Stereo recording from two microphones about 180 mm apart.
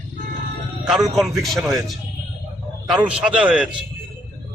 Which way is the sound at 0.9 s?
Centre (ahead or behind).